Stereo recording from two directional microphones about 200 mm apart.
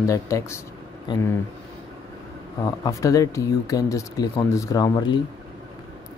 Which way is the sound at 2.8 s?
15° left (ahead or behind).